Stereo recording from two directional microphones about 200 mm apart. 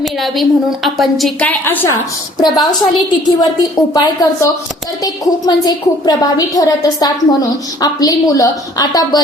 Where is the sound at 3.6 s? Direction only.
20° left (ahead or behind).